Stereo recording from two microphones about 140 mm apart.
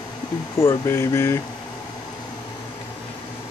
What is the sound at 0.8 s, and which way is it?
Speech, 20° left (ahead or behind).